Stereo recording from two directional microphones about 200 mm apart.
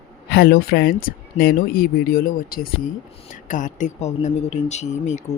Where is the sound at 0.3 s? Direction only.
50° left (ahead or behind).